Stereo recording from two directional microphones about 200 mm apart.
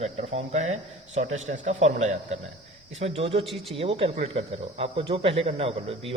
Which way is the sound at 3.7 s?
30° right (ahead or behind).